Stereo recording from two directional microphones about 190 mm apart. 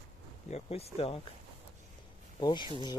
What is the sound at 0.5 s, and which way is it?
Speech, 30° left (ahead or behind).